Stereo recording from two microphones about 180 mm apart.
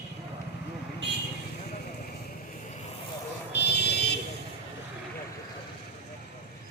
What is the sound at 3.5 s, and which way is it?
Buzzer, 70° left (ahead or behind).